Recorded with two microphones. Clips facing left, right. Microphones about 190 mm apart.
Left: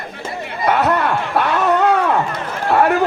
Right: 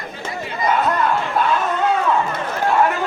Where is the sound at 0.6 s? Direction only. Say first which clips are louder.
Left 2 dB; 65° left (ahead or behind).